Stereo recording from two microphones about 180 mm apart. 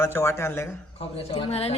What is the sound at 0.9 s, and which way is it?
Speech, 30° left (ahead or behind).